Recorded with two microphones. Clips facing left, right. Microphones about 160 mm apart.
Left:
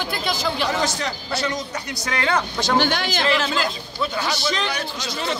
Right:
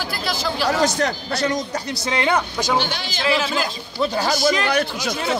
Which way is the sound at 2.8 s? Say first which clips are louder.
Left 4 dB; 55° left (ahead or behind).